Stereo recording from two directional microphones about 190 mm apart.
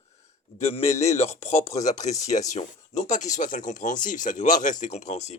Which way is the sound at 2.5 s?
40° left (ahead or behind).